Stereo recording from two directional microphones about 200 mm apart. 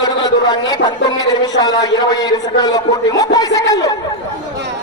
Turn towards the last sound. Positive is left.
turn(degrees=15)  # may be behind; listen again after turning